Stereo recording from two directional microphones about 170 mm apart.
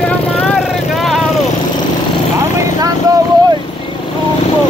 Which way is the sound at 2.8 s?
20° right (ahead or behind).